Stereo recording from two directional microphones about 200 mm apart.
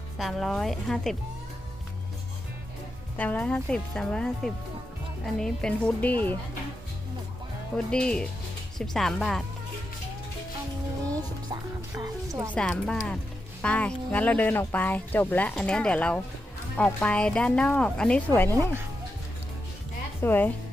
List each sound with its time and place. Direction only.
0.2 s speech: centre (ahead or behind)
3.2 s speech: 5° left (ahead or behind)
7.9 s speech: 5° left (ahead or behind)
11.1 s speech: 20° right (ahead or behind)
12.5 s speech: 5° left (ahead or behind)
20.2 s speech: 10° left (ahead or behind)